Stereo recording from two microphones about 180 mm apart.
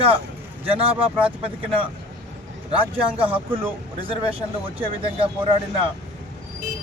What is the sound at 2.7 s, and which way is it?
Speech, 30° right (ahead or behind).